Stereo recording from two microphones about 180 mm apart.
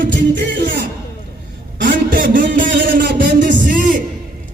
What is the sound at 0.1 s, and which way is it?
Music, 80° right.